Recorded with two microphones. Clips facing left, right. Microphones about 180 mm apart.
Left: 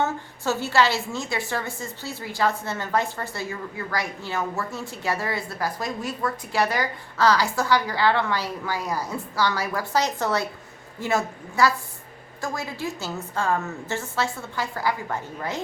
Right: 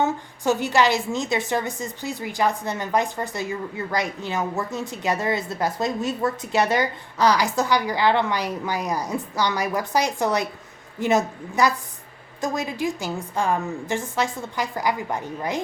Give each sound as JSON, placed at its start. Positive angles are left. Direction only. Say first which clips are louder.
{"t": 0.0, "sound": "a woman's voice", "louder": "right 3 dB", "side_deg": -15}